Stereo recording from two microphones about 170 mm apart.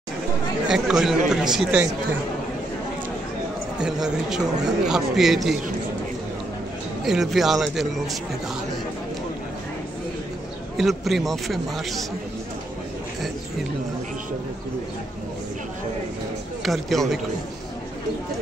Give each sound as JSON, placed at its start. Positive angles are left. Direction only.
{"t": 0.7, "sound": "a man's voice", "side_deg": -5}
{"t": 3.8, "sound": "a man's voice", "side_deg": -5}
{"t": 7.1, "sound": "a man's voice", "side_deg": 0}
{"t": 10.8, "sound": "a man's voice", "side_deg": 0}
{"t": 16.6, "sound": "a man's voice", "side_deg": 0}